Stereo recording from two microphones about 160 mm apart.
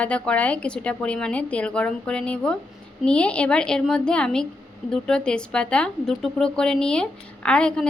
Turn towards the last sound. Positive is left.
turn(degrees=5)  # may be behind; listen again after turning